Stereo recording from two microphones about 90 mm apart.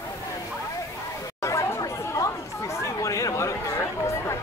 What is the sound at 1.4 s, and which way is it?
Chatter, 35° left (ahead or behind).